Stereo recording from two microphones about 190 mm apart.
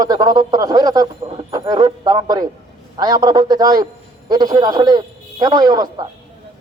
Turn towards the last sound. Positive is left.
turn(degrees=-20)  # may be behind; listen again after turning